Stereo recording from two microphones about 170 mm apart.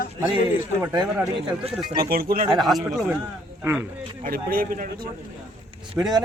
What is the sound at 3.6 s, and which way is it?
Speech, 15° right (ahead or behind).